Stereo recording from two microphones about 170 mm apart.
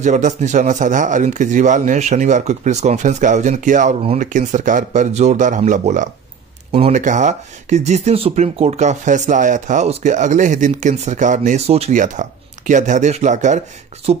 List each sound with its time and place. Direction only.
0.0 s speech: 45° right (ahead or behind)